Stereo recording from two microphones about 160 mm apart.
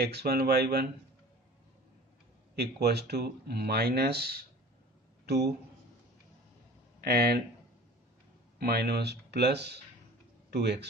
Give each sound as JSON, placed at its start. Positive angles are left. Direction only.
{"t": 0.0, "sound": "speech", "side_deg": -80}
{"t": 2.5, "sound": "speech", "side_deg": -90}
{"t": 5.2, "sound": "speech", "side_deg": -90}
{"t": 7.0, "sound": "speech", "side_deg": -70}
{"t": 8.5, "sound": "speech", "side_deg": -85}